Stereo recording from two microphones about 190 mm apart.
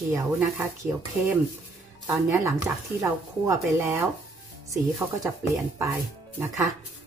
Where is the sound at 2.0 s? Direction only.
10° right (ahead or behind).